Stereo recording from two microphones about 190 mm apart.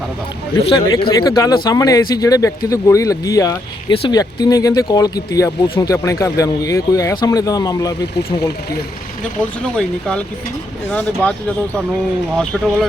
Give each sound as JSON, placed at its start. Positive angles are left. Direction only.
{"t": 0.9, "sound": "speech", "side_deg": 25}
{"t": 9.2, "sound": "speech", "side_deg": 5}